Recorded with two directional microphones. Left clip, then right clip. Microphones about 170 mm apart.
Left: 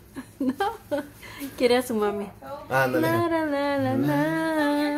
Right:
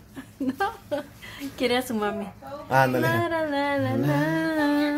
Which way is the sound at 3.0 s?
15° left (ahead or behind).